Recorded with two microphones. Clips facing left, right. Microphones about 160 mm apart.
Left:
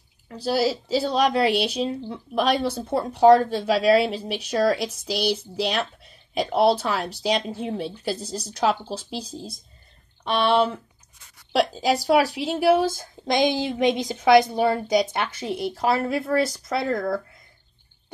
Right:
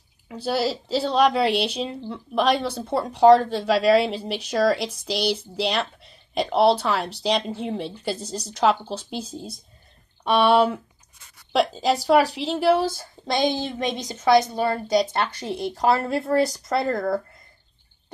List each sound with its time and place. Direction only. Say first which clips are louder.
0.3 s speech: left 1 dB; centre (ahead or behind)
11.5 s a woman's voice: even; 5° left (ahead or behind)
15.3 s speech: left 1 dB; 5° left (ahead or behind)